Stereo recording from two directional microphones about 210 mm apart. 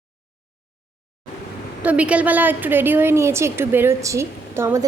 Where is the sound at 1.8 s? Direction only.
5° right (ahead or behind).